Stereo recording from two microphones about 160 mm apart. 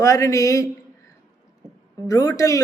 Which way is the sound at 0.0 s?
20° left (ahead or behind).